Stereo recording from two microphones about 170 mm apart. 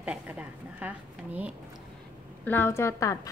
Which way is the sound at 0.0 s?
10° right (ahead or behind).